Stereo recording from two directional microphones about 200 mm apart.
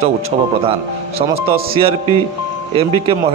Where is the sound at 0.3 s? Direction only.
35° right (ahead or behind).